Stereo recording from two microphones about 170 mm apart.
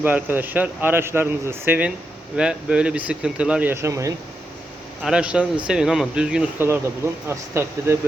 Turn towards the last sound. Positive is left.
turn(degrees=-15)  # may be behind; listen again after turning